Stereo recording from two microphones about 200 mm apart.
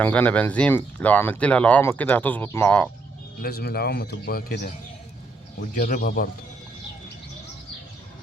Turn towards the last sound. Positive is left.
turn(degrees=45)  # may be behind; listen again after turning